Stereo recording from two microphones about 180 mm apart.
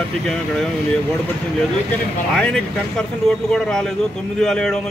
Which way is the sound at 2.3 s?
5° left (ahead or behind).